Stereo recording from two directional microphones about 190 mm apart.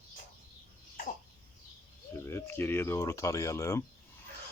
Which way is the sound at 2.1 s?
15° left (ahead or behind).